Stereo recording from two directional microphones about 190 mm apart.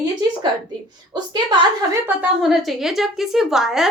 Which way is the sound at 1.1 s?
20° right (ahead or behind).